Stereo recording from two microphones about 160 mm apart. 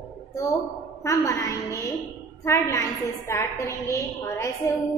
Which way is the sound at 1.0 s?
20° left (ahead or behind).